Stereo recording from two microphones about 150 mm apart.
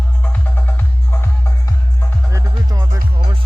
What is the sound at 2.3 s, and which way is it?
Music, 20° right (ahead or behind).